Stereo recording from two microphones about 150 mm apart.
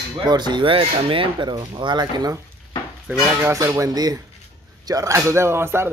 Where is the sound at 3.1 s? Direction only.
5° right (ahead or behind).